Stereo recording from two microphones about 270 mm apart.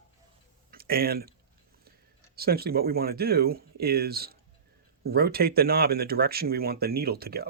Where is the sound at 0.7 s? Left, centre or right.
Right.